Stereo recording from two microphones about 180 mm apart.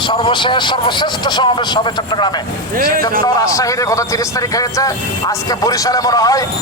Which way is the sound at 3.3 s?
20° left (ahead or behind).